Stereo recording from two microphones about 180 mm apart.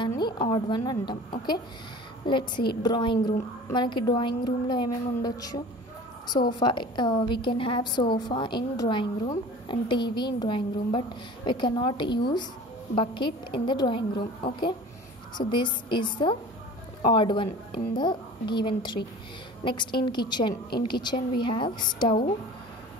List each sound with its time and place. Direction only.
0.2 s a woman's voice: 25° left (ahead or behind)
2.5 s a woman's voice: 60° left (ahead or behind)
2.8 s a woman's voice: 25° left (ahead or behind)
6.6 s a woman's voice: 25° left (ahead or behind)